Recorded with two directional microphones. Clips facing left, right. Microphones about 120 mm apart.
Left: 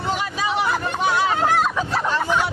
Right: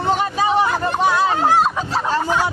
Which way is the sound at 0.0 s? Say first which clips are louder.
Right 6 dB; 45° right (ahead or behind).